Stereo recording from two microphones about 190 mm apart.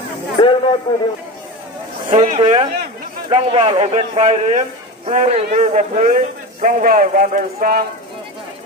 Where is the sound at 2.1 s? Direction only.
35° right (ahead or behind).